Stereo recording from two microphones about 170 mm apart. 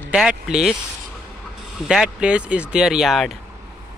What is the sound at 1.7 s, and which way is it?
Speech, 5° right (ahead or behind).